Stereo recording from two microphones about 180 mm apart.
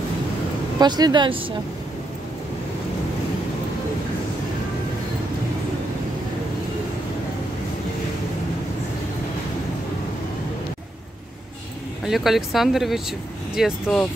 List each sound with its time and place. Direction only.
0.7 s speech: 20° right (ahead or behind)
12.0 s speech: centre (ahead or behind)